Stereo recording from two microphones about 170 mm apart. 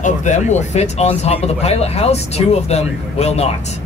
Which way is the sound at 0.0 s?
45° left (ahead or behind).